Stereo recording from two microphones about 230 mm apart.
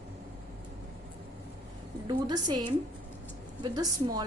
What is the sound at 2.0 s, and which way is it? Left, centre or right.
A woman's voice, centre.